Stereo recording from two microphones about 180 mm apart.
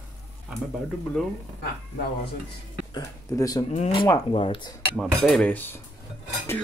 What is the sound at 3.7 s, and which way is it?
Speech, 35° left (ahead or behind).